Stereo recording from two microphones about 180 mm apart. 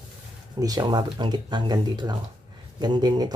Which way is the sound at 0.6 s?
20° right (ahead or behind).